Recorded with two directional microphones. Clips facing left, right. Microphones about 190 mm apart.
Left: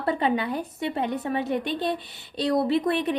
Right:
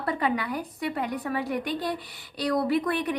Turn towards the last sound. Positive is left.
turn(degrees=25)  # may be behind; listen again after turning